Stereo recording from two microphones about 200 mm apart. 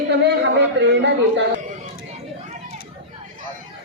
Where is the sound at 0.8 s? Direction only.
60° right (ahead or behind).